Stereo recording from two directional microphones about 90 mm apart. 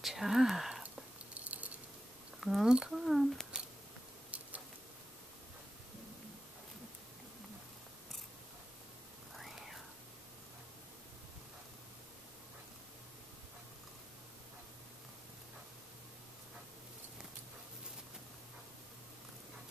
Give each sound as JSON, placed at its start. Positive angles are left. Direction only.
{"t": 0.0, "sound": "speech", "side_deg": -5}
{"t": 1.3, "sound": "a sound", "side_deg": -15}
{"t": 2.4, "sound": "speech", "side_deg": -5}
{"t": 9.3, "sound": "whispering", "side_deg": 0}